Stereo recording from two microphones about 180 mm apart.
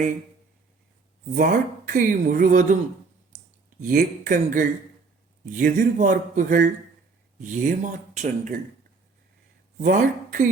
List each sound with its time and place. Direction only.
1.4 s speech: 45° right (ahead or behind)
3.8 s speech: 50° right (ahead or behind)
9.7 s speech: 50° right (ahead or behind)